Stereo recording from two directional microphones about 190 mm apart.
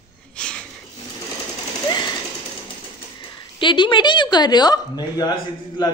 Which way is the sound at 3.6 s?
25° left (ahead or behind).